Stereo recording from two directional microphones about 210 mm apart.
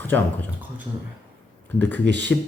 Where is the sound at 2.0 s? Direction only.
55° right (ahead or behind).